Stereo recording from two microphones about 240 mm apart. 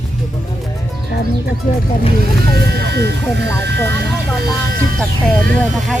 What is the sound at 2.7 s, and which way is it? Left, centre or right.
Speech, right.